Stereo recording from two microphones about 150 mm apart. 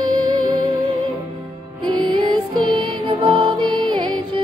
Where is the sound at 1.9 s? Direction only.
30° right (ahead or behind).